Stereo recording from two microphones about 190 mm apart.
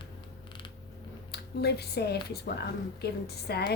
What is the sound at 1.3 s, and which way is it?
Speech, 60° left (ahead or behind).